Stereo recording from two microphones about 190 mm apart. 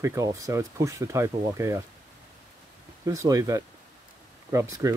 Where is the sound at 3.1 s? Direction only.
15° right (ahead or behind).